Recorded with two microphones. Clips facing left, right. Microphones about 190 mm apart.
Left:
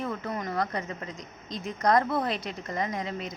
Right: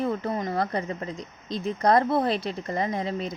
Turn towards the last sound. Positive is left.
turn(degrees=-30)  # may be behind; listen again after turning